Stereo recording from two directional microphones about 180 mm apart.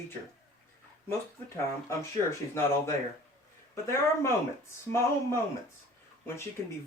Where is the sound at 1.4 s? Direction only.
15° left (ahead or behind).